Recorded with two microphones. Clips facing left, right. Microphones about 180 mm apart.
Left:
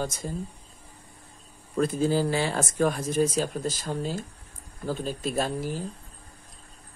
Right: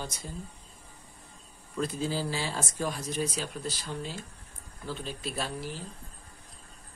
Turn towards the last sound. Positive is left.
turn(degrees=45)  # may be behind; listen again after turning